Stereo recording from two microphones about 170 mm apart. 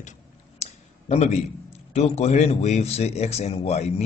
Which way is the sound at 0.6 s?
40° left (ahead or behind).